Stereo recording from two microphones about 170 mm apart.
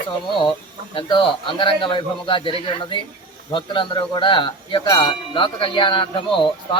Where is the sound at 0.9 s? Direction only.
30° left (ahead or behind).